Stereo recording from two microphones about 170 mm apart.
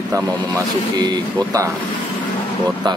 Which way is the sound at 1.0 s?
20° right (ahead or behind).